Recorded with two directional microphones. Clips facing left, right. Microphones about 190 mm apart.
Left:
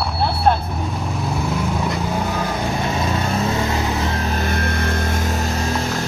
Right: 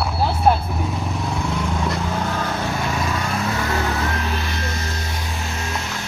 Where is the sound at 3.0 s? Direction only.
30° left (ahead or behind).